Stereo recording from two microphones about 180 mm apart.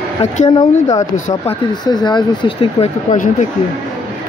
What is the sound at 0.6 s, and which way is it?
Speech, 20° left (ahead or behind).